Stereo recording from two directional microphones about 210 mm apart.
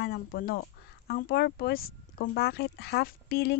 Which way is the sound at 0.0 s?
45° left (ahead or behind).